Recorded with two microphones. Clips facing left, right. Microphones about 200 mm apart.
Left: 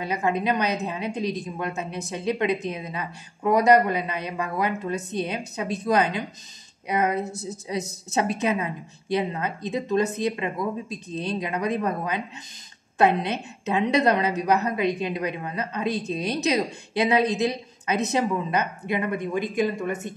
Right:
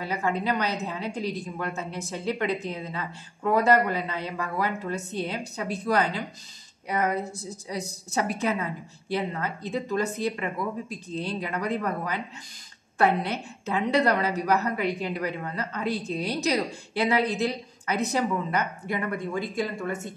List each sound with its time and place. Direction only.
0.0 s a woman's voice: 20° left (ahead or behind)